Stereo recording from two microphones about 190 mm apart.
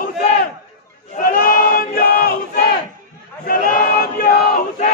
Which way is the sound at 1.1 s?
50° left (ahead or behind).